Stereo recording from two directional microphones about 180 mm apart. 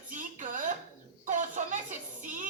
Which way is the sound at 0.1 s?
45° right (ahead or behind).